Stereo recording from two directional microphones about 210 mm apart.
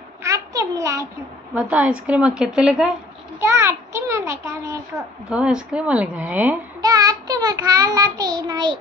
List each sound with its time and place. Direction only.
0.2 s a sound: 15° right (ahead or behind)
1.5 s a woman's voice: 5° right (ahead or behind)
6.8 s child singing: 20° right (ahead or behind)